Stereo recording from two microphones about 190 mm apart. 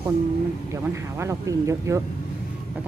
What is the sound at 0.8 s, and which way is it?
A woman's voice, 15° right (ahead or behind).